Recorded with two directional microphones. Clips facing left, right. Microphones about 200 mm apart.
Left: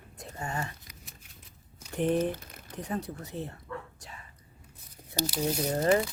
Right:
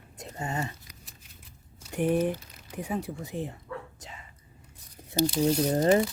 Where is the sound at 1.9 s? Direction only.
10° right (ahead or behind).